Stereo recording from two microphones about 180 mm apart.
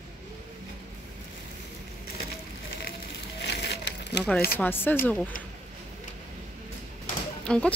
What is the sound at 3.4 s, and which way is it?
Crumpling, 70° left (ahead or behind).